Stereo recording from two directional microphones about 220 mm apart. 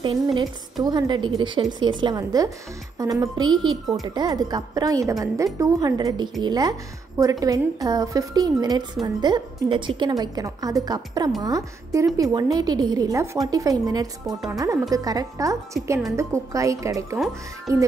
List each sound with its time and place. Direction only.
0.0 s a woman's voice: 20° right (ahead or behind)
14.2 s speech: centre (ahead or behind)
14.6 s a woman's voice: 15° right (ahead or behind)